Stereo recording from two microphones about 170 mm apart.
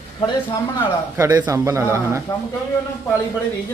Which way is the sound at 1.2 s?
20° right (ahead or behind).